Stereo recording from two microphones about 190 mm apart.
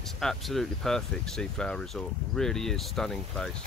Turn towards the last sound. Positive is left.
turn(degrees=5)  # may be behind; listen again after turning